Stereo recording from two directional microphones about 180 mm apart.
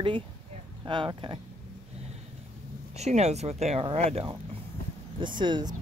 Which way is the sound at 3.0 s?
35° right (ahead or behind).